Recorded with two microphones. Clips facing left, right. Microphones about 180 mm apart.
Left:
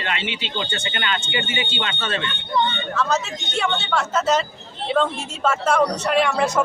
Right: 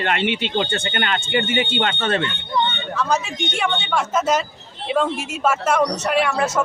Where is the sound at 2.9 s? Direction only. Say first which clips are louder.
Right 1 dB; 15° right (ahead or behind).